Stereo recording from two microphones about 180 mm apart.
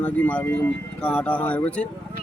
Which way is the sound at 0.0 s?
10° left (ahead or behind).